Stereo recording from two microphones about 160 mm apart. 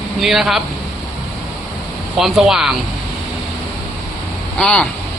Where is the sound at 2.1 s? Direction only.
5° right (ahead or behind).